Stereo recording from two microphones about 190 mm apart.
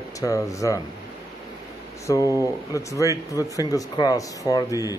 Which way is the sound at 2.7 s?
15° left (ahead or behind).